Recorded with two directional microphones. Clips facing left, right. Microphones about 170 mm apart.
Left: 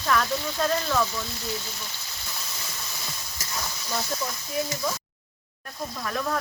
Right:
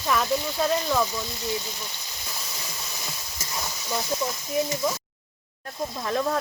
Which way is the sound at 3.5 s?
10° right (ahead or behind).